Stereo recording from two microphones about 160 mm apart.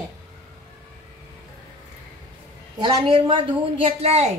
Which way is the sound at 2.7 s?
25° right (ahead or behind).